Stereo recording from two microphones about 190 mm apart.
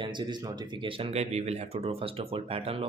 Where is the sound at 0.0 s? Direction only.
25° right (ahead or behind).